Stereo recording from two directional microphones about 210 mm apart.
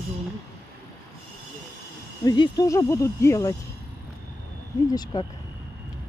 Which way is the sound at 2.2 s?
20° left (ahead or behind).